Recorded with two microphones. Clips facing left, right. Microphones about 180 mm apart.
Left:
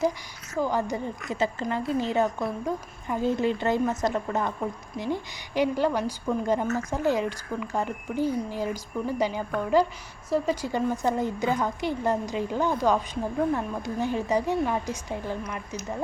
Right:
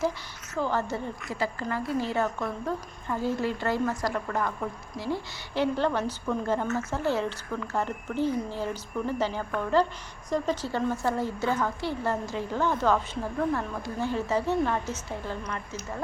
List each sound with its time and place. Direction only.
0.5 s a woman's voice: 15° left (ahead or behind)